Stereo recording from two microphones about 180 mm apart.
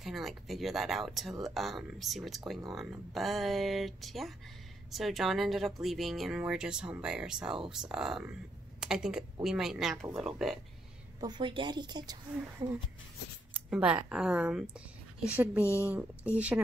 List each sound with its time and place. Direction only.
0.0 s speech: centre (ahead or behind)
11.1 s a woman's voice: 25° right (ahead or behind); by 16.6 s 5° right (ahead or behind)